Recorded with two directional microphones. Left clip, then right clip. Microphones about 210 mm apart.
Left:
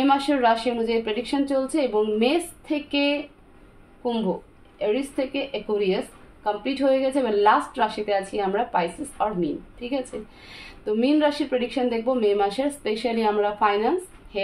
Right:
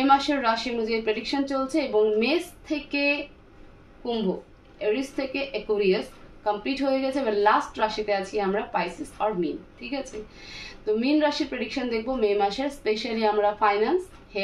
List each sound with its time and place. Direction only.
0.0 s speech: 45° left (ahead or behind)
4.7 s speech: 45° left (ahead or behind)
10.5 s speech: 45° left (ahead or behind)